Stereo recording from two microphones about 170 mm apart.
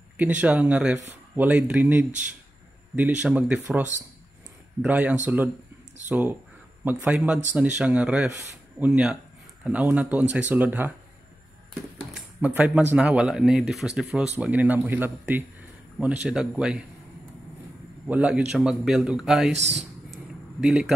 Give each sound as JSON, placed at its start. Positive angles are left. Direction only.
{"t": 0.2, "sound": "speech", "side_deg": -10}
{"t": 12.1, "sound": "speech", "side_deg": -10}
{"t": 18.0, "sound": "a man's voice", "side_deg": -10}
{"t": 20.6, "sound": "a man's voice", "side_deg": -5}